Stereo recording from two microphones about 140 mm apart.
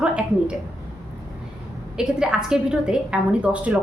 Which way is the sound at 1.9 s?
5° right (ahead or behind).